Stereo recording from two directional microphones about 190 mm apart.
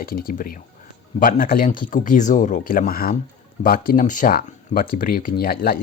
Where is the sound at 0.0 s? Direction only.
50° left (ahead or behind).